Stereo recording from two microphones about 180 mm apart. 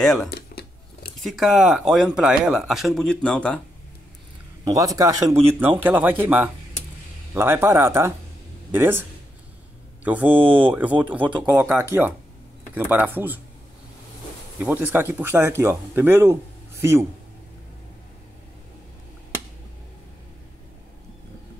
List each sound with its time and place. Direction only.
0.0 s speech: centre (ahead or behind)
0.3 s scissors: 65° left (ahead or behind)
1.2 s speech: centre (ahead or behind)
4.6 s speech: 20° right (ahead or behind)
10.0 s speech: 10° right (ahead or behind)
14.6 s speech: 10° right (ahead or behind)